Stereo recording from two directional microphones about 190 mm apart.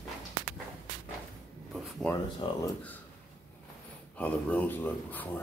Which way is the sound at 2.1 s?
15° left (ahead or behind).